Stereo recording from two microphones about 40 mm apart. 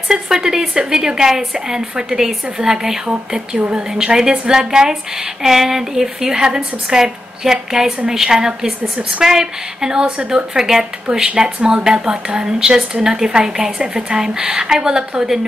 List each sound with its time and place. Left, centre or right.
0.1 s a woman's voice: centre
10.5 s a woman's voice: centre
11.1 s a woman's voice: right